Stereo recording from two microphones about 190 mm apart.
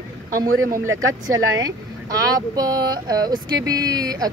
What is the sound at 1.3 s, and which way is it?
Speech, 20° right (ahead or behind).